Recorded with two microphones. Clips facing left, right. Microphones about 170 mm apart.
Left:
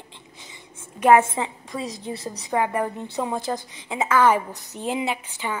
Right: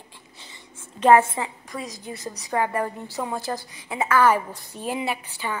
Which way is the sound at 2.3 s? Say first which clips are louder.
Left 1 dB; 20° left (ahead or behind).